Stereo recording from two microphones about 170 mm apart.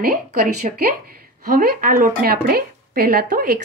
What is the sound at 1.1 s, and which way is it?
Speech, 60° right (ahead or behind).